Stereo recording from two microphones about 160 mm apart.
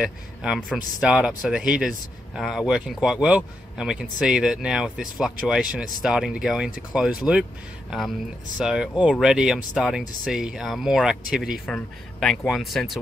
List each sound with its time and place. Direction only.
0.0 s a man's voice: 5° right (ahead or behind)
8.5 s a man's voice: 5° right (ahead or behind)